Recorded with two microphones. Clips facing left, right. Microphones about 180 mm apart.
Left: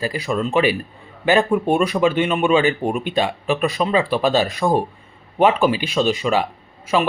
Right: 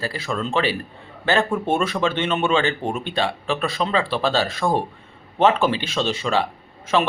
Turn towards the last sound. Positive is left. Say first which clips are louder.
# left 1 dB
turn(degrees=10)  # may be behind; listen again after turning